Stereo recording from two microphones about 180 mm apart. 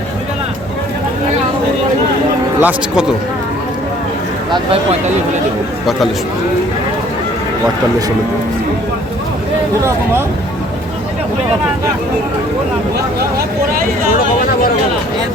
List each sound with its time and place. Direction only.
2.6 s speech: 5° right (ahead or behind)
4.5 s speech: 30° right (ahead or behind)